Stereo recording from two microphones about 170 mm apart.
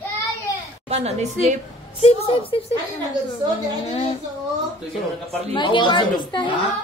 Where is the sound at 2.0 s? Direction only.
35° left (ahead or behind).